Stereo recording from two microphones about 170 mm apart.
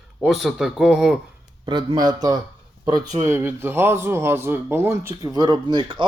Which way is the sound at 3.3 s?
15° right (ahead or behind).